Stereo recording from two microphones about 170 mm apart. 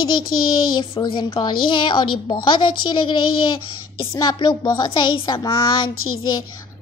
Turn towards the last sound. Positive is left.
turn(degrees=30)  # may be behind; listen again after turning